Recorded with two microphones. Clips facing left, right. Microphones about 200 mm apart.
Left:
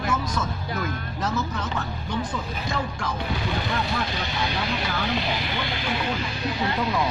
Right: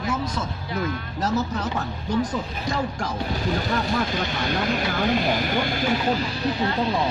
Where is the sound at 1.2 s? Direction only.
40° right (ahead or behind).